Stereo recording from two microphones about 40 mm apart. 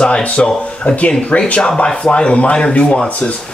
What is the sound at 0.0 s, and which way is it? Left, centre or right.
A man's voice, left.